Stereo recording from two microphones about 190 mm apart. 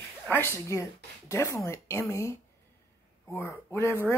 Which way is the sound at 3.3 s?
15° left (ahead or behind).